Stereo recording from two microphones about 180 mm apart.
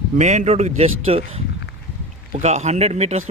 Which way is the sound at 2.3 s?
40° right (ahead or behind).